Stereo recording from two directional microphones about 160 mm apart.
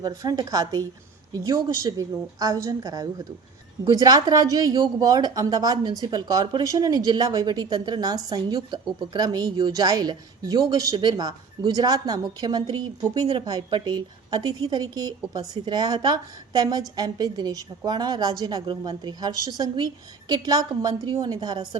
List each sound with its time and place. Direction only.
0.0 s speech: 25° right (ahead or behind)